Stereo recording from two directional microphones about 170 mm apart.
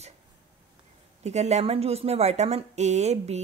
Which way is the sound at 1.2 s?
40° right (ahead or behind).